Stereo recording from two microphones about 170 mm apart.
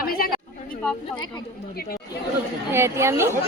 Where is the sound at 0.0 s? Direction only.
60° left (ahead or behind).